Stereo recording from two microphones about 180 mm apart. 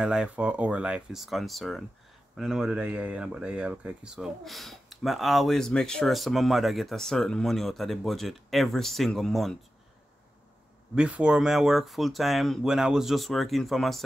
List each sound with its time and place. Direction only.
0.0 s speech: 5° right (ahead or behind)
11.0 s speech: 5° right (ahead or behind)